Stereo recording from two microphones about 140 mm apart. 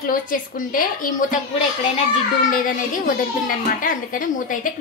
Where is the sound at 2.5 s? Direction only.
75° left (ahead or behind).